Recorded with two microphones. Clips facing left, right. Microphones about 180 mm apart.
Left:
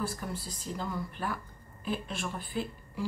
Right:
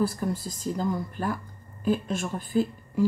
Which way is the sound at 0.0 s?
40° right (ahead or behind).